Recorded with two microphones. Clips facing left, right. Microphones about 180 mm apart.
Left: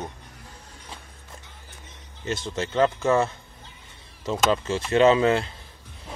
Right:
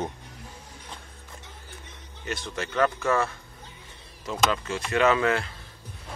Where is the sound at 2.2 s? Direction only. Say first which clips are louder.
Left 4 dB; 25° left (ahead or behind).